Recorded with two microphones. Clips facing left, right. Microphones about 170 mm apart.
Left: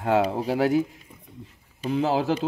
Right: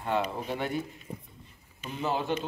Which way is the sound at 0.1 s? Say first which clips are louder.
Left 8 dB; 90° left.